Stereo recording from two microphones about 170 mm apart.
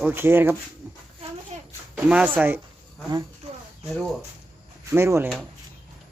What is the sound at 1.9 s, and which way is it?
Speech, 5° right (ahead or behind).